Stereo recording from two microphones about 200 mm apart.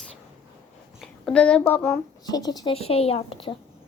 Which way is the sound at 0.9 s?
5° left (ahead or behind).